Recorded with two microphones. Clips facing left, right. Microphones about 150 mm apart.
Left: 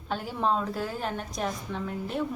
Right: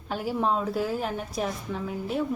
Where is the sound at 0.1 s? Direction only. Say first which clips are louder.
Right 1 dB; 5° right (ahead or behind).